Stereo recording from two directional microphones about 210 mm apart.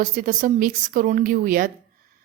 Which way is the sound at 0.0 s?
40° right (ahead or behind).